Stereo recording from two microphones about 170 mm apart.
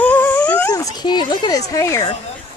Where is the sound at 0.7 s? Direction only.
20° left (ahead or behind).